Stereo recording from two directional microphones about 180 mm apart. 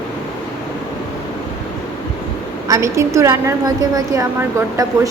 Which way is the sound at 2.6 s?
20° right (ahead or behind).